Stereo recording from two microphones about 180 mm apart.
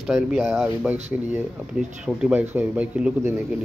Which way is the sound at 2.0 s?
5° right (ahead or behind).